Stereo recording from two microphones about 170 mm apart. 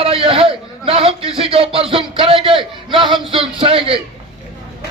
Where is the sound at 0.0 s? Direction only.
30° right (ahead or behind).